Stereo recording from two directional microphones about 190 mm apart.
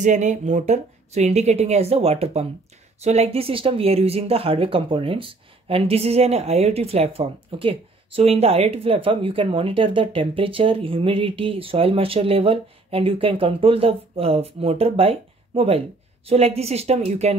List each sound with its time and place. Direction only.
0.0 s a woman's voice: 40° right (ahead or behind)